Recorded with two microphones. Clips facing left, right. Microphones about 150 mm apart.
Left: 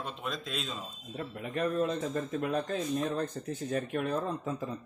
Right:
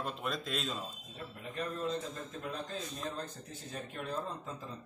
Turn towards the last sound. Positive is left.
turn(degrees=70)  # may be behind; listen again after turning